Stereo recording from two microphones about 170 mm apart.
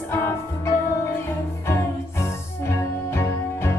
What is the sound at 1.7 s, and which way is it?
Music, 15° left (ahead or behind).